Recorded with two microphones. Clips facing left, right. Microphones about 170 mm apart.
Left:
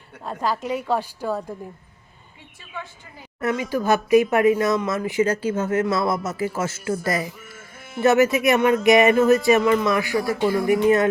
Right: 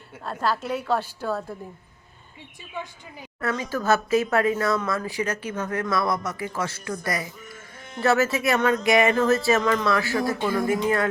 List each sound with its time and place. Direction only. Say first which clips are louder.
0.2 s speech: left 1 dB; 15° left (ahead or behind)
3.4 s speech: left 3 dB; 15° left (ahead or behind)
7.5 s music: left 4 dB; 5° left (ahead or behind)
8.0 s speech: left 5 dB; 20° left (ahead or behind)